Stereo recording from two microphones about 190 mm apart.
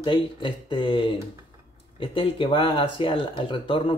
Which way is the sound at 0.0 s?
25° left (ahead or behind).